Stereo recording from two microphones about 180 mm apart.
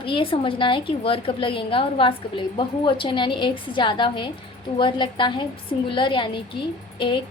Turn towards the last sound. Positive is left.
turn(degrees=25)  # may be behind; listen again after turning